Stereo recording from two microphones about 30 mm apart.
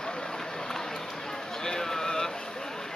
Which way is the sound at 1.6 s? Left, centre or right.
Centre.